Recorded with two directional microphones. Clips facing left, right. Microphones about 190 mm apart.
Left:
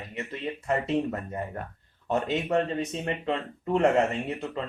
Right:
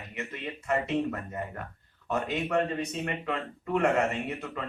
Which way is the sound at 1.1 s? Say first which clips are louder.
Left 3 dB; 30° left (ahead or behind).